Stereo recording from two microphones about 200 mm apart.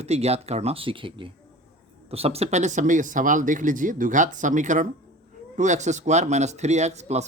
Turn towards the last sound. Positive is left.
turn(degrees=-35)  # may be behind; listen again after turning